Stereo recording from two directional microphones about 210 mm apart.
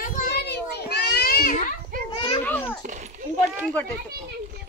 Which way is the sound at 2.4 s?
10° left (ahead or behind).